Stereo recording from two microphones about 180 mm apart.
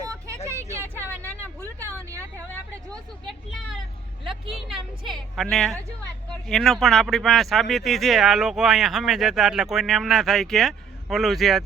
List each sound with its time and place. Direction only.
0.4 s vehicle: 15° right (ahead or behind)
2.0 s vehicle: 15° right (ahead or behind)
4.2 s a sound: centre (ahead or behind)
5.4 s speech: centre (ahead or behind)